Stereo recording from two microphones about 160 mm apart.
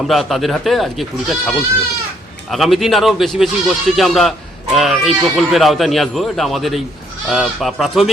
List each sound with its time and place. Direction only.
0.0 s speech: centre (ahead or behind)